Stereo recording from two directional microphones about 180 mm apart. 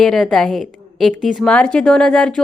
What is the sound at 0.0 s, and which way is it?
A woman's voice, centre (ahead or behind).